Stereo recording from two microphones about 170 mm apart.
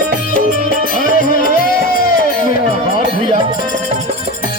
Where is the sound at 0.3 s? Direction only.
55° left (ahead or behind).